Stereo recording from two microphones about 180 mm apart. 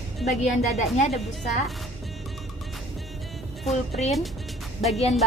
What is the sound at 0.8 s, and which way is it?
Speech, 40° left (ahead or behind).